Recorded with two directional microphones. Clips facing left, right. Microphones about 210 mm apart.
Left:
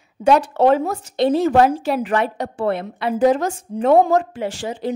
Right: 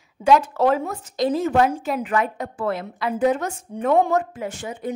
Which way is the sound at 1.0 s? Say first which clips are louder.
Left 4 dB; 65° left (ahead or behind).